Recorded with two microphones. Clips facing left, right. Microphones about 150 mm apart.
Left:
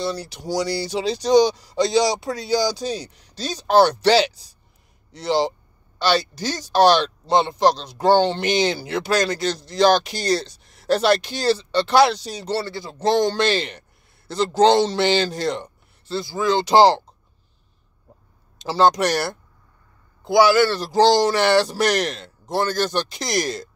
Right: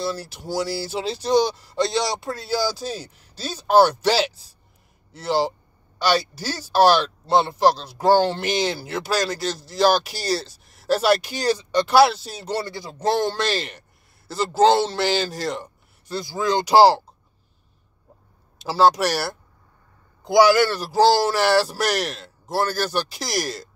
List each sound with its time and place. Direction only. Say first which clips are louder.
0.0 s speech: left 1 dB; 5° right (ahead or behind)
16.1 s speech: left 2 dB; 20° right (ahead or behind)
18.6 s speech: even; 5° right (ahead or behind)
20.2 s speech: even; 15° right (ahead or behind)